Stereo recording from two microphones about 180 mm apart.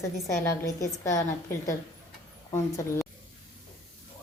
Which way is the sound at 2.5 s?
15° left (ahead or behind).